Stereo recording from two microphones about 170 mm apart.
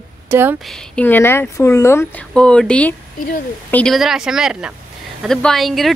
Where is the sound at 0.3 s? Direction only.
10° right (ahead or behind).